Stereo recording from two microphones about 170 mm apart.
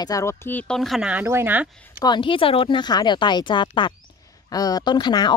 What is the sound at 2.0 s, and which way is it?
Speech, 25° left (ahead or behind).